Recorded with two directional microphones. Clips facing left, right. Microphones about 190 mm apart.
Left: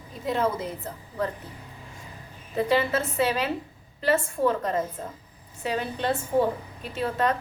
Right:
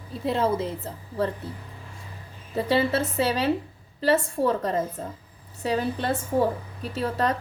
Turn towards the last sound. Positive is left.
turn(degrees=-35)  # may be behind; listen again after turning